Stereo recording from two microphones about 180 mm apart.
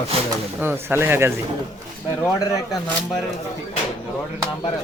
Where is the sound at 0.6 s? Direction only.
10° right (ahead or behind).